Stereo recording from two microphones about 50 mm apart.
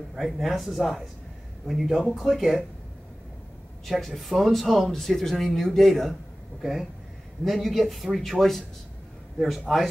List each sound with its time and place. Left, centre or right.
0.1 s speech: centre
3.8 s speech: centre